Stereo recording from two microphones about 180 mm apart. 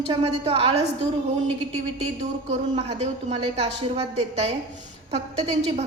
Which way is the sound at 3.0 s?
35° right (ahead or behind).